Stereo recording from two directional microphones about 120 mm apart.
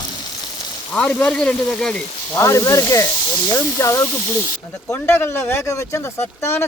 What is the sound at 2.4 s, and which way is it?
Speech, 25° left (ahead or behind).